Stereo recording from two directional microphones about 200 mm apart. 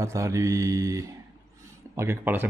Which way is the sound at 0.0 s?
15° right (ahead or behind).